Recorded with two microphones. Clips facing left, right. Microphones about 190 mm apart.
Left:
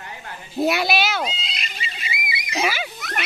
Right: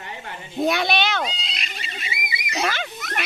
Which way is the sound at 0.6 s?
5° left (ahead or behind).